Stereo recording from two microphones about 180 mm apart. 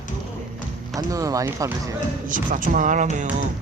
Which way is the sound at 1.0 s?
20° right (ahead or behind).